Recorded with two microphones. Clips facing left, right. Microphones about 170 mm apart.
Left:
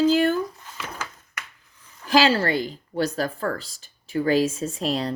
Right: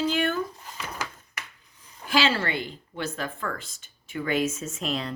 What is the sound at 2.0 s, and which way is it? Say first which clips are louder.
Speech: left 5 dB; 40° left (ahead or behind).